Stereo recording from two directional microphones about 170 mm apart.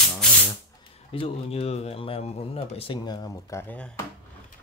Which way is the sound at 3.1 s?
20° left (ahead or behind).